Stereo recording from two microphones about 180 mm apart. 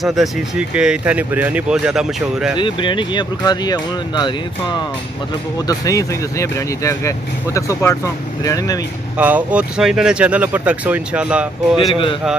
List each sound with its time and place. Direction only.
0.0 s speech: centre (ahead or behind)
2.5 s speech: 25° left (ahead or behind)
5.7 s speech: 20° left (ahead or behind)
9.2 s speech: 10° right (ahead or behind)
11.9 s speech: 30° left (ahead or behind)